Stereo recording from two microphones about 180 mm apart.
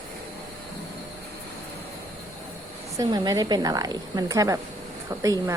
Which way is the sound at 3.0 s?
20° right (ahead or behind).